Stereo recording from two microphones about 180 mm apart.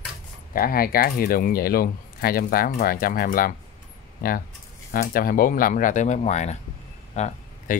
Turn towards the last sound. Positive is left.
turn(degrees=40)  # may be behind; listen again after turning